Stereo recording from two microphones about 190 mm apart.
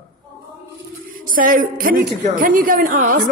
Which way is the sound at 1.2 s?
45° right (ahead or behind).